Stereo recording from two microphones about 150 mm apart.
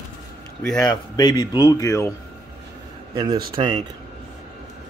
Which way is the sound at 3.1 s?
25° right (ahead or behind).